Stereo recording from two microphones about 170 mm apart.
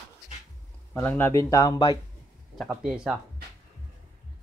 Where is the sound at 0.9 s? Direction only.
10° left (ahead or behind).